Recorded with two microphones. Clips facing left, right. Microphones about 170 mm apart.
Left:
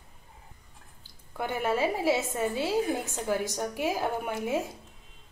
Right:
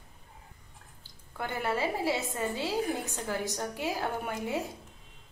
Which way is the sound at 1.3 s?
15° left (ahead or behind).